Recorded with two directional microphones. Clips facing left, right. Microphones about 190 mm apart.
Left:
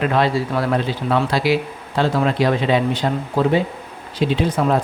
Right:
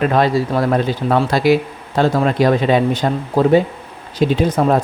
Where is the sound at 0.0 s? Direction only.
40° right (ahead or behind).